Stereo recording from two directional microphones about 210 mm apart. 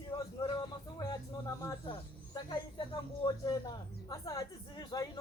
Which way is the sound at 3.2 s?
20° left (ahead or behind).